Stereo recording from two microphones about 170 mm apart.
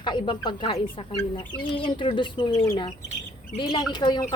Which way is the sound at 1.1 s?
10° left (ahead or behind).